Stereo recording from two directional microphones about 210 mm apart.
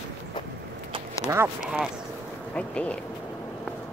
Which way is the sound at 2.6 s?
5° left (ahead or behind).